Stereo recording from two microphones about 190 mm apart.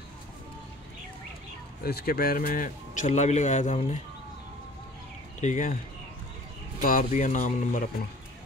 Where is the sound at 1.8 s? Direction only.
55° left (ahead or behind); by 4.0 s 35° left (ahead or behind).